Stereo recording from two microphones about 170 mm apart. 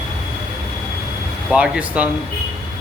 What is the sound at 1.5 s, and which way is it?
Speech, 5° right (ahead or behind).